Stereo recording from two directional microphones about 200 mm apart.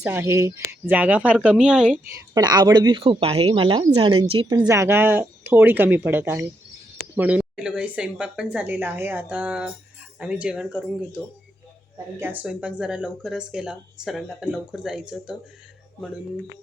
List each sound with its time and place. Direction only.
0.0 s a woman's voice: 10° right (ahead or behind)
2.3 s a woman's voice: 20° right (ahead or behind)
12.2 s speech: 10° right (ahead or behind)